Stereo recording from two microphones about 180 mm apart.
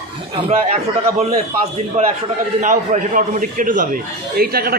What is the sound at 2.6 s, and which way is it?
A man's voice, 45° right (ahead or behind).